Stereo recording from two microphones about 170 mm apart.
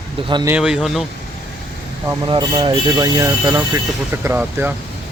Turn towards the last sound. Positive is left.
turn(degrees=-10)  # may be behind; listen again after turning